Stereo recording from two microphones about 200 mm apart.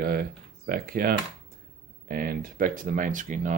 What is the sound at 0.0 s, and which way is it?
Speech, 50° right (ahead or behind).